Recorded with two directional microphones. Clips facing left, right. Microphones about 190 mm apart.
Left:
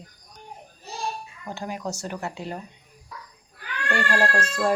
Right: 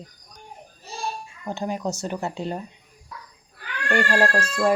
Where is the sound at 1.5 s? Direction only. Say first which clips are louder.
Right 4 dB; 25° right (ahead or behind).